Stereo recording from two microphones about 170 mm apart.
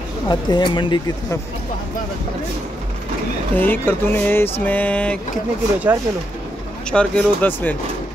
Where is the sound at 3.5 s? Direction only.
10° left (ahead or behind).